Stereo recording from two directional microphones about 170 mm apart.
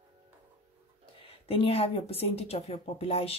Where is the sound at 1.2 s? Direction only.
35° left (ahead or behind).